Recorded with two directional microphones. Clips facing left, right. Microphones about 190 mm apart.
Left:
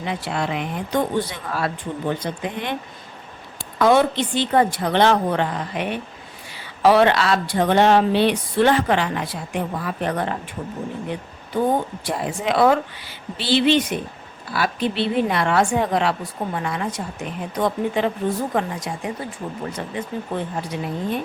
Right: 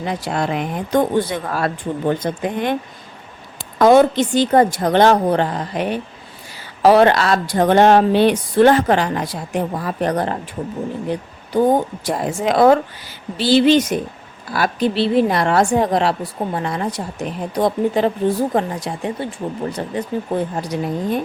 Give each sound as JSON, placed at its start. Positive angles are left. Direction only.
{"t": 0.0, "sound": "speech", "side_deg": -40}
{"t": 3.8, "sound": "a woman's voice", "side_deg": -45}